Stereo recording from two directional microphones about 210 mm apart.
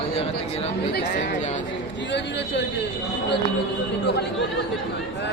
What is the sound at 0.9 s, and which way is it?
Speech, 50° left (ahead or behind).